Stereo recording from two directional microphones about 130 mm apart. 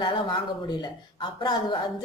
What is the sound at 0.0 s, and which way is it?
A woman's voice, 35° left (ahead or behind).